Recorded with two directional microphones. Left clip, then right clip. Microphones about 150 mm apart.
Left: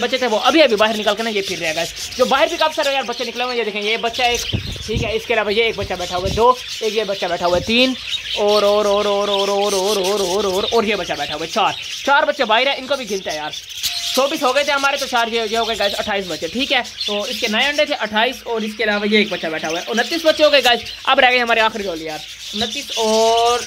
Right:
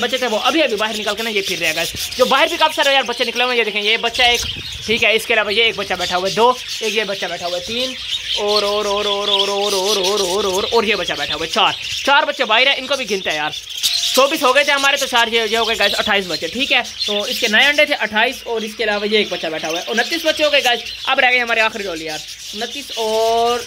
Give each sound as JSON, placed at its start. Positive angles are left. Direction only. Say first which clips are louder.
{"t": 0.0, "sound": "speech", "louder": "left 1 dB", "side_deg": 20}
{"t": 1.2, "sound": "speech", "louder": "right 2 dB", "side_deg": 5}
{"t": 5.3, "sound": "speech", "louder": "right 2 dB", "side_deg": 15}
{"t": 6.1, "sound": "speech", "louder": "even", "side_deg": -10}
{"t": 7.4, "sound": "speech", "louder": "left 8 dB", "side_deg": 40}
{"t": 8.4, "sound": "speech", "louder": "left 4 dB", "side_deg": 15}
{"t": 13.1, "sound": "speech", "louder": "right 4 dB", "side_deg": -10}
{"t": 14.1, "sound": "speech", "louder": "right 3 dB", "side_deg": 0}
{"t": 16.5, "sound": "speech", "louder": "right 2 dB", "side_deg": 20}
{"t": 17.1, "sound": "speech", "louder": "right 4 dB", "side_deg": -5}
{"t": 18.0, "sound": "speech", "louder": "right 1 dB", "side_deg": 5}
{"t": 22.6, "sound": "speech", "louder": "left 2 dB", "side_deg": 0}